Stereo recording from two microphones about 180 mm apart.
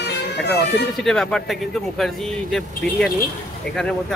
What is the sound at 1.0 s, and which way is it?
Speech, centre (ahead or behind).